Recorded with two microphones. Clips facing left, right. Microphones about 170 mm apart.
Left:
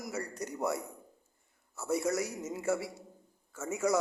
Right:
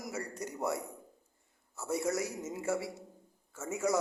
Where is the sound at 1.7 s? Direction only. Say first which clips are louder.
Left 2 dB; 25° right (ahead or behind).